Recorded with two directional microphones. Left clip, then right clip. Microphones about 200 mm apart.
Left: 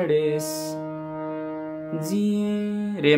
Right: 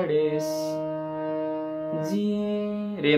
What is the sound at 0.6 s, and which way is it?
Music, 10° left (ahead or behind).